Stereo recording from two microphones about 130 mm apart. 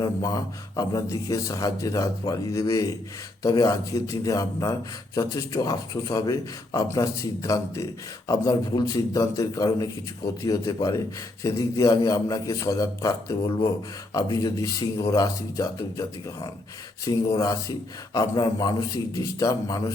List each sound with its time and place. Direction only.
0.0 s speech: 30° left (ahead or behind)